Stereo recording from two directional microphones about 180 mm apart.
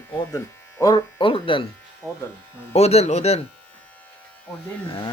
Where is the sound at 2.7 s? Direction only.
35° left (ahead or behind).